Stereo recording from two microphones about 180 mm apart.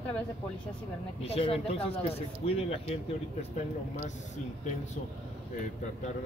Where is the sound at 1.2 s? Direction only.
35° left (ahead or behind).